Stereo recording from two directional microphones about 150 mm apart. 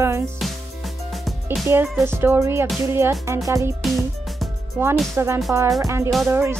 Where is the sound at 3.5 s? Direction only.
20° right (ahead or behind).